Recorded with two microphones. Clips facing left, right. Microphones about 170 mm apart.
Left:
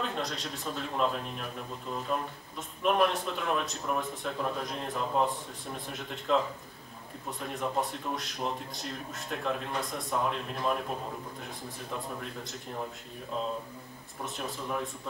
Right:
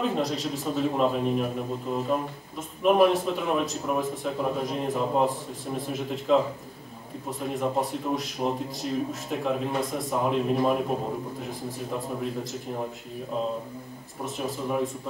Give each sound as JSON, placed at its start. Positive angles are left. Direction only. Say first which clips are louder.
{"t": 0.0, "sound": "speech", "louder": "right 8 dB", "side_deg": 0}
{"t": 8.4, "sound": "speech", "louder": "right 6 dB", "side_deg": -15}
{"t": 8.8, "sound": "speech", "louder": "right 10 dB", "side_deg": -5}
{"t": 14.2, "sound": "speech", "louder": "right 6 dB", "side_deg": 0}